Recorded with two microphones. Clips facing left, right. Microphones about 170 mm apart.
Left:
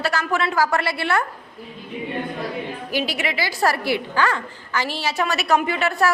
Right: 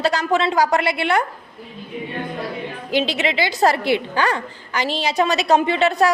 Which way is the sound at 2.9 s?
20° right (ahead or behind).